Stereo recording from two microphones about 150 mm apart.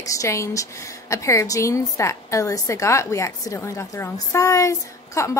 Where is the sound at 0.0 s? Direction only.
20° left (ahead or behind).